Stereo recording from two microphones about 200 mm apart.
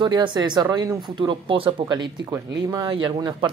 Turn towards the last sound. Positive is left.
turn(degrees=-25)  # may be behind; listen again after turning